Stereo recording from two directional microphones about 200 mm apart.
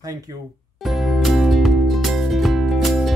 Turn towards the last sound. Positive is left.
turn(degrees=0)  # may be behind; listen again after turning